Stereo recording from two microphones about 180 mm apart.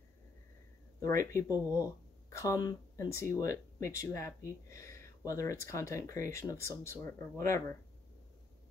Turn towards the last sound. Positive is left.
turn(degrees=15)  # may be behind; listen again after turning